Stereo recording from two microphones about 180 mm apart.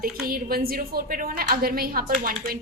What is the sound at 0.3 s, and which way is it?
A woman's voice, 55° right (ahead or behind).